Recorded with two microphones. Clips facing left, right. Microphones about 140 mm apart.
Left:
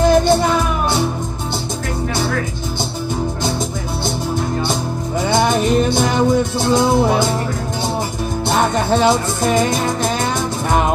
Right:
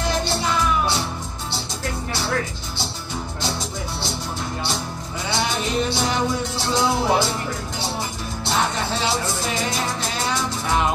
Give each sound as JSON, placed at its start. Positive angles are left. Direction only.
{"t": 0.1, "sound": "music", "side_deg": 50}
{"t": 5.3, "sound": "music", "side_deg": 50}
{"t": 8.5, "sound": "music", "side_deg": 50}